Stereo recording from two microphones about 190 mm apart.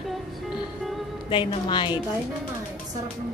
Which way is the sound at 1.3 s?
25° left (ahead or behind).